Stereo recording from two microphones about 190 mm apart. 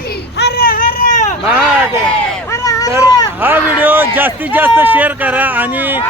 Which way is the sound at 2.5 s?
15° left (ahead or behind).